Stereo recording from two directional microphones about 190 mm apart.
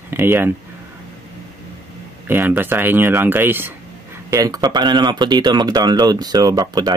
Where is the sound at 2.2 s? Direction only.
10° right (ahead or behind).